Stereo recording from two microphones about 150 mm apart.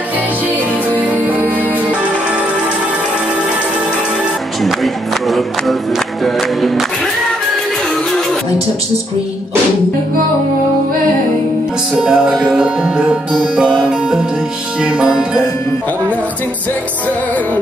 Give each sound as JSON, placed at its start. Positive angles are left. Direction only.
{"t": 0.9, "sound": "music", "side_deg": -10}
{"t": 4.6, "sound": "music", "side_deg": 0}
{"t": 12.0, "sound": "music", "side_deg": -5}